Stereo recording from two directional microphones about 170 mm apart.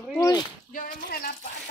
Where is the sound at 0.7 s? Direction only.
60° left (ahead or behind).